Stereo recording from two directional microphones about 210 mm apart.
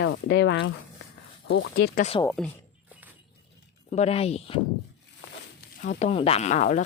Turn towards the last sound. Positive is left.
turn(degrees=35)  # may be behind; listen again after turning